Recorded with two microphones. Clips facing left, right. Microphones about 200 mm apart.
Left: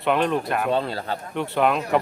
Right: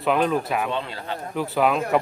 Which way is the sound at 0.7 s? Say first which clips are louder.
Left 5 dB; 40° left (ahead or behind).